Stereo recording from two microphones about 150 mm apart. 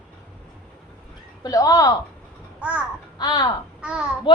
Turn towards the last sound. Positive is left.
turn(degrees=-5)  # may be behind; listen again after turning